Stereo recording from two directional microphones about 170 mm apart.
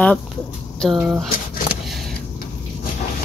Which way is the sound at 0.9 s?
10° right (ahead or behind).